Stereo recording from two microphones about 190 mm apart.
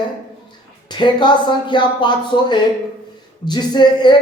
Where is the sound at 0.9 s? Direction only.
25° left (ahead or behind).